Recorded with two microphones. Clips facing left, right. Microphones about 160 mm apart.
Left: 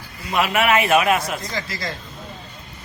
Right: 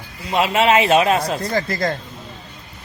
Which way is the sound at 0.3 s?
25° right (ahead or behind).